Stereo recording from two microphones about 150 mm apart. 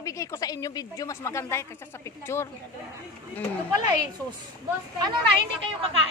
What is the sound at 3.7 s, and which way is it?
Speech, 25° right (ahead or behind).